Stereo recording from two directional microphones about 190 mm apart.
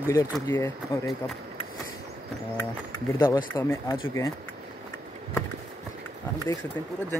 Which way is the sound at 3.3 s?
15° left (ahead or behind).